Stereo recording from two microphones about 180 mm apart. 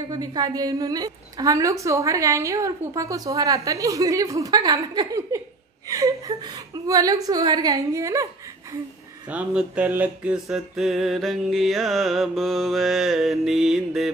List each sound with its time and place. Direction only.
0.1 s a woman's voice: 20° right (ahead or behind)
9.3 s mantra: 5° right (ahead or behind)